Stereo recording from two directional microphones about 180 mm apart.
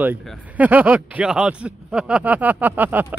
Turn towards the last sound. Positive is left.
turn(degrees=-10)  # may be behind; listen again after turning